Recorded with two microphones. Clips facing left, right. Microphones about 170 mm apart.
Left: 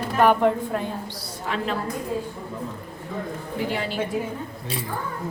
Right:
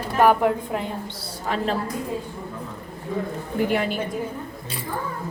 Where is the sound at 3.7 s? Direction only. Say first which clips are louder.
Right 5 dB; 55° right (ahead or behind).